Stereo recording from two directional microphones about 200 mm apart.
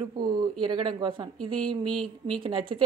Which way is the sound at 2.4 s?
25° right (ahead or behind).